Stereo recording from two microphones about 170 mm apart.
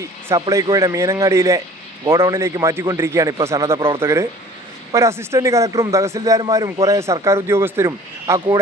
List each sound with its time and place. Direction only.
0.0 s a man's voice: 20° right (ahead or behind)